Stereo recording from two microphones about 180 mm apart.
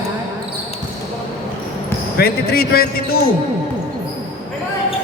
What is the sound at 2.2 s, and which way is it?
Speech, 60° left (ahead or behind).